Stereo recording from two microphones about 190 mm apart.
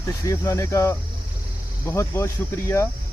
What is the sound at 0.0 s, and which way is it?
Speech, 15° left (ahead or behind).